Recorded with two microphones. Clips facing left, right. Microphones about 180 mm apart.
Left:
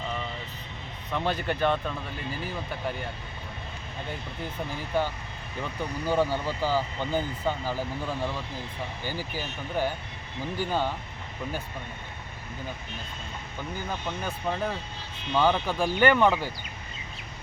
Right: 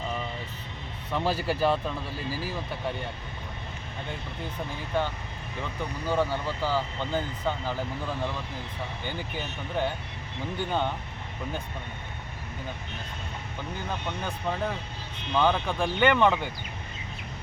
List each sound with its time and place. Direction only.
1.1 s speech: 5° right (ahead or behind)
2.0 s speech: 30° right (ahead or behind)
2.4 s speech: centre (ahead or behind)
4.9 s speech: 10° left (ahead or behind)
14.1 s speech: 5° left (ahead or behind)